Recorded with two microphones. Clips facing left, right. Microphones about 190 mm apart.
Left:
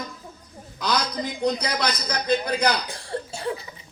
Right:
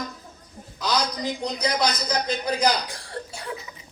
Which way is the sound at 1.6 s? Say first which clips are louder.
Right 2 dB; 60° left (ahead or behind).